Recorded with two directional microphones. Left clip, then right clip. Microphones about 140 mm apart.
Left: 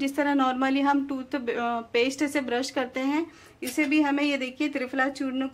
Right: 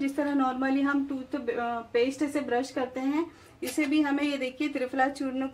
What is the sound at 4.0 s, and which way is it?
A woman's voice, 30° left (ahead or behind).